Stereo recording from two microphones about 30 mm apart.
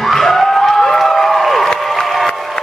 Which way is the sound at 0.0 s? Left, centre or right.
Centre.